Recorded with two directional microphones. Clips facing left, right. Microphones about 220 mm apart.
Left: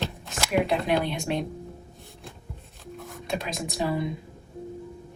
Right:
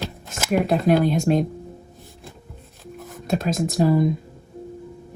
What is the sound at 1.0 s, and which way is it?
Speech, 45° right (ahead or behind).